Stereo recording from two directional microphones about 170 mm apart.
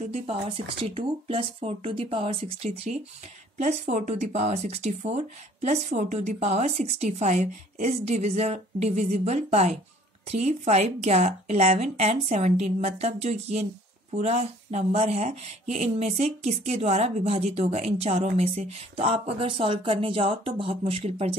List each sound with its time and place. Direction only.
0.0 s speech: 40° right (ahead or behind)